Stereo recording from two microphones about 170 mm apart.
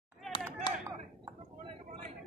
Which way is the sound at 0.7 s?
25° left (ahead or behind).